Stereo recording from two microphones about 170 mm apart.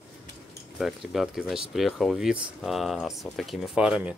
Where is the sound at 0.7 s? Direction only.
Centre (ahead or behind).